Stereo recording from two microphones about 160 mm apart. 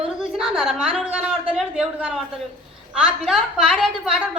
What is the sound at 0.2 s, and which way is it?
A woman's voice, centre (ahead or behind).